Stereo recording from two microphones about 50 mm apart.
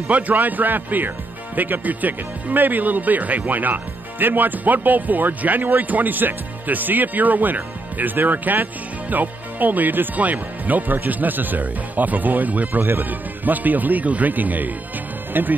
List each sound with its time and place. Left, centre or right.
0.1 s a man's voice: right